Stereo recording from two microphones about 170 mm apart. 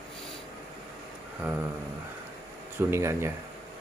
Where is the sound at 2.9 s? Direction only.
15° right (ahead or behind).